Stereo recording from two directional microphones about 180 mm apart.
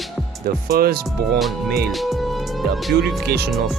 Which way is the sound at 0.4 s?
55° right (ahead or behind).